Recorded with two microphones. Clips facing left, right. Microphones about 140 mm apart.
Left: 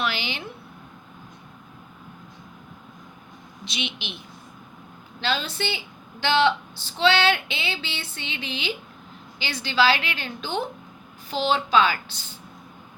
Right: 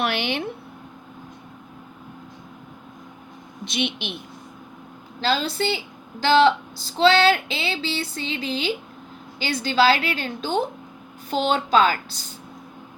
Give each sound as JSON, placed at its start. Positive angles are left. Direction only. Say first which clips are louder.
{"t": 0.0, "sound": "speech", "louder": "right 5 dB", "side_deg": -55}
{"t": 3.6, "sound": "a woman's voice", "louder": "right 7 dB", "side_deg": -50}
{"t": 5.2, "sound": "a woman's voice", "louder": "right 4 dB", "side_deg": -35}